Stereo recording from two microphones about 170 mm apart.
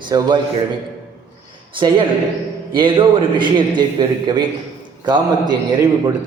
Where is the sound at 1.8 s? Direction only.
30° right (ahead or behind).